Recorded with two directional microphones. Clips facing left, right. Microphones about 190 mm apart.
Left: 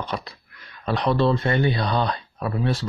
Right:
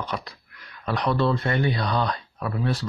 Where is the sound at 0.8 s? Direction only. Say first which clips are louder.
Left 3 dB; 25° left (ahead or behind).